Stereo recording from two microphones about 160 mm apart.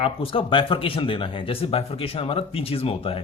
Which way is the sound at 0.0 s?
35° left (ahead or behind).